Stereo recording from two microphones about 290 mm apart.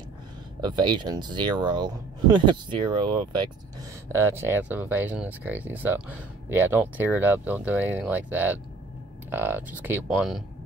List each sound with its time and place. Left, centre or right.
0.6 s speech: centre